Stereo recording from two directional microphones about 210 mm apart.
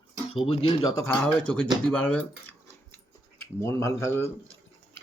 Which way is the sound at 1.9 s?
5° left (ahead or behind).